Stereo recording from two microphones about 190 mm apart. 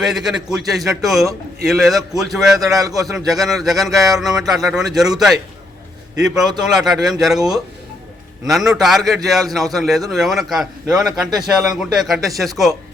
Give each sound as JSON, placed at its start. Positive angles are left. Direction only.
{"t": 0.0, "sound": "speech", "side_deg": 0}